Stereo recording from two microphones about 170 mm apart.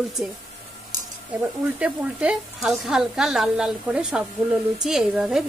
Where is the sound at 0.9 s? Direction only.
20° right (ahead or behind).